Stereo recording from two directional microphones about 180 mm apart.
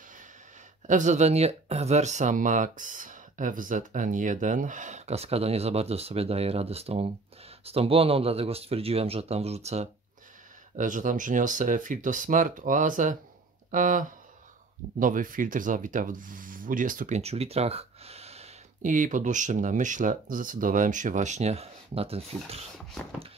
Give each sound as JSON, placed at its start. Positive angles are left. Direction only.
{"t": 0.8, "sound": "speech", "side_deg": -45}